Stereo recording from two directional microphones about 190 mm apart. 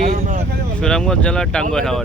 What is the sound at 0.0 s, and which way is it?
Vehicle, 40° right (ahead or behind).